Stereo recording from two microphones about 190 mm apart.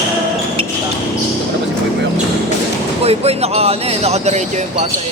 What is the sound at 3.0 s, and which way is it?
Speech, 30° right (ahead or behind).